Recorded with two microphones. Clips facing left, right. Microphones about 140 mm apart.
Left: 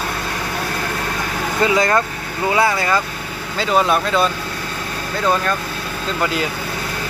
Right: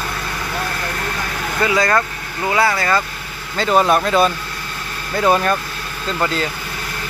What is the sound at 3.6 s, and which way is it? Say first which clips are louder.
Speech: right 2 dB; centre (ahead or behind).